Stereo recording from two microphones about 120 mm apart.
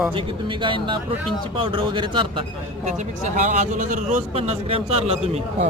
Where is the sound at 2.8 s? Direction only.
85° right.